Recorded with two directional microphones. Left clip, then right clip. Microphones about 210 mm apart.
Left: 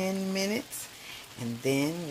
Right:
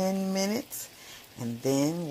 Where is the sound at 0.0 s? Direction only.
20° right (ahead or behind).